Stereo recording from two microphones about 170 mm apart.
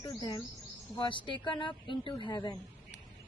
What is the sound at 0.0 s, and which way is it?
Speech, 25° left (ahead or behind).